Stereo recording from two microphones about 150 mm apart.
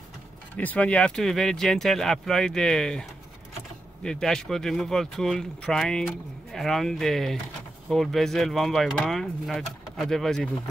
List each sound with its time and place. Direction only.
0.6 s speech: 10° left (ahead or behind)